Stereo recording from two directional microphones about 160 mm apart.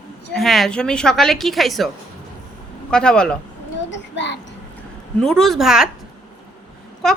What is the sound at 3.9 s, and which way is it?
Speech, 90° left.